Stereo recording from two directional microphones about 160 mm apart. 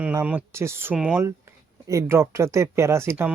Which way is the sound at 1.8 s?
20° right (ahead or behind).